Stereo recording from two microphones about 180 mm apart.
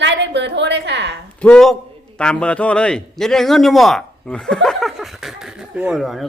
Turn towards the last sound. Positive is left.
turn(degrees=0)  # may be behind; listen again after turning